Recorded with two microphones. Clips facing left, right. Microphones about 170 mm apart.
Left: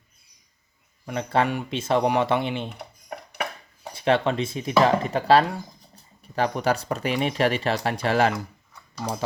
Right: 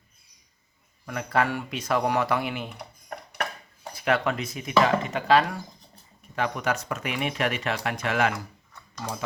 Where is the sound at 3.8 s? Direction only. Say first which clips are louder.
Left 3 dB; 25° left (ahead or behind).